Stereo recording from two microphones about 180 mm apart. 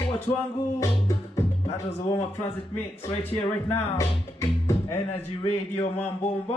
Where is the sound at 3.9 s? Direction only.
20° left (ahead or behind).